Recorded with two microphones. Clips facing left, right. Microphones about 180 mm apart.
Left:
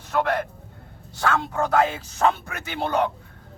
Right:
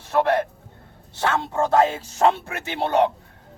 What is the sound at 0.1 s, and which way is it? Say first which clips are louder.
Speech: right 4 dB; 30° right (ahead or behind).